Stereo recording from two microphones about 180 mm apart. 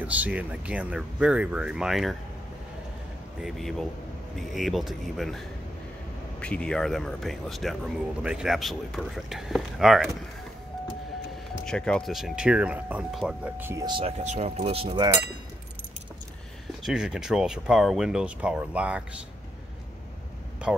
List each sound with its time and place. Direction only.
0.0 s speech: 10° right (ahead or behind)
3.3 s speech: centre (ahead or behind)
6.4 s speech: 5° left (ahead or behind)
11.6 s speech: 5° left (ahead or behind); by 13.8 s 10° right (ahead or behind)
13.8 s speech: 25° right (ahead or behind)
14.2 s speech: 40° right (ahead or behind)
16.8 s speech: 5° right (ahead or behind)
20.7 s speech: centre (ahead or behind)